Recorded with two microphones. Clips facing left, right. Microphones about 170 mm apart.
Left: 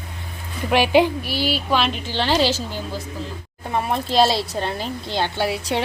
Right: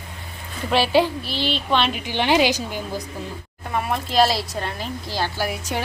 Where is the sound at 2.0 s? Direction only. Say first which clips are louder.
Right 1 dB; 15° right (ahead or behind).